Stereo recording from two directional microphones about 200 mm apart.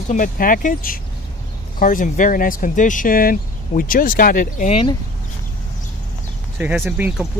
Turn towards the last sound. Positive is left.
turn(degrees=-5)  # may be behind; listen again after turning